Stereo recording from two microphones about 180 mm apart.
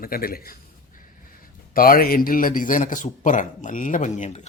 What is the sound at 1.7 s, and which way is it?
A man's voice, 55° left (ahead or behind).